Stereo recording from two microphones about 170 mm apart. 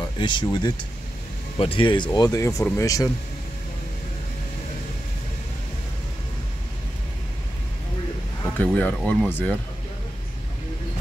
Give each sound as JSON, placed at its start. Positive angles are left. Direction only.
{"t": 0.2, "sound": "speech", "side_deg": 30}
{"t": 8.5, "sound": "speech", "side_deg": 10}